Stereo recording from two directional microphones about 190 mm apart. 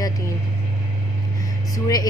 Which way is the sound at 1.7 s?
20° left (ahead or behind).